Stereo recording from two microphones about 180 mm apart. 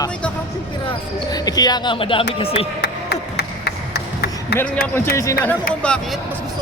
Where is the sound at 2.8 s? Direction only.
65° left (ahead or behind).